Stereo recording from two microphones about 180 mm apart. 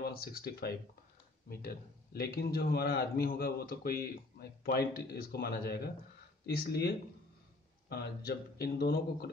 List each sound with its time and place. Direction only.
0.1 s a man's voice: 55° left (ahead or behind)
7.9 s a man's voice: 60° left (ahead or behind)